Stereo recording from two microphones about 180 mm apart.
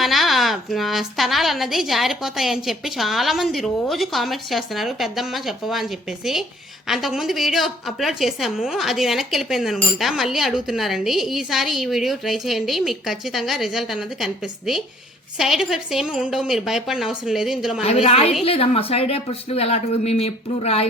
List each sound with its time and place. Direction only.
0.0 s a woman's voice: centre (ahead or behind)
17.8 s speech: 35° left (ahead or behind)